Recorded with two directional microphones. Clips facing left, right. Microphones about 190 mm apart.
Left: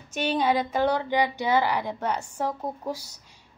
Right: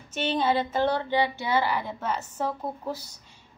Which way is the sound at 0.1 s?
10° left (ahead or behind).